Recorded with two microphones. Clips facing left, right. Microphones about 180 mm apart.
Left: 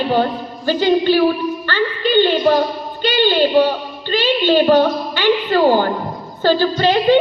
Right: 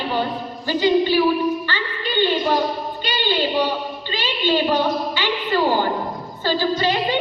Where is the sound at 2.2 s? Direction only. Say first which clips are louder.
Left 5 dB; 60° left (ahead or behind).